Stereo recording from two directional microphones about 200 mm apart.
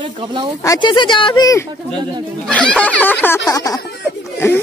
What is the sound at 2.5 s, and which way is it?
A woman's voice, 5° left (ahead or behind).